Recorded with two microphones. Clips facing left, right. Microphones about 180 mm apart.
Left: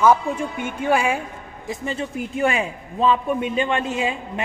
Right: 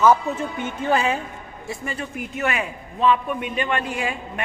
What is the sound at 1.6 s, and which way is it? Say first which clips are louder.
A man's voice: left 4 dB; 25° left (ahead or behind).